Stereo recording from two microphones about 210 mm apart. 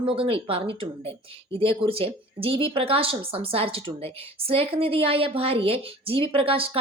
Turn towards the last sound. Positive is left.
turn(degrees=-25)  # may be behind; listen again after turning